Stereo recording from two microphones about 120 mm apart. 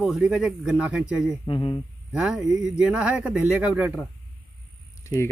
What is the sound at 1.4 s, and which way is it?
Speech, 45° left (ahead or behind).